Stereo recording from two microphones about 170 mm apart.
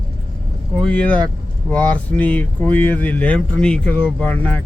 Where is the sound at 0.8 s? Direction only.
5° left (ahead or behind).